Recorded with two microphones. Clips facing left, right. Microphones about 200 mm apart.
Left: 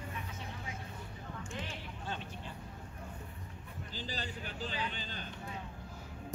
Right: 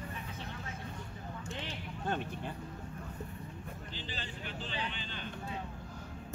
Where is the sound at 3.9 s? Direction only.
40° left (ahead or behind).